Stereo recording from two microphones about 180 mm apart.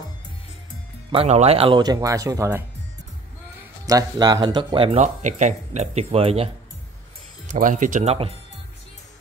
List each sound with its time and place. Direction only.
1.1 s speech: 35° right (ahead or behind); by 2.6 s 15° right (ahead or behind)
3.8 s speech: 20° right (ahead or behind)
7.5 s speech: 45° right (ahead or behind)